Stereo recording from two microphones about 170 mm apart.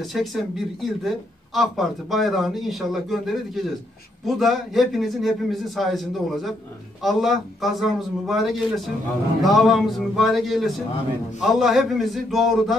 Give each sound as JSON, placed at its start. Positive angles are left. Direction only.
{"t": 0.0, "sound": "speech", "side_deg": 0}